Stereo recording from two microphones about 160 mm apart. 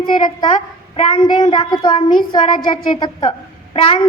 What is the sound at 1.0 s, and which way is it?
A woman's voice, 30° left (ahead or behind).